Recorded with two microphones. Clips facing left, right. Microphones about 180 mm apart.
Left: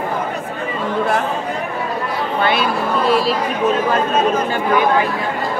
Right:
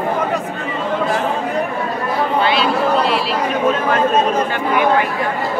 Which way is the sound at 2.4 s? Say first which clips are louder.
Left 1 dB; 50° left (ahead or behind).